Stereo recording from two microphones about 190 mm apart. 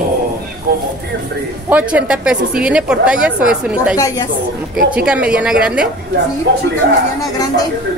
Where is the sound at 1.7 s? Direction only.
5° right (ahead or behind).